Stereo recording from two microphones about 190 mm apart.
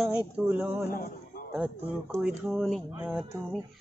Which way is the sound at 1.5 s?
5° right (ahead or behind).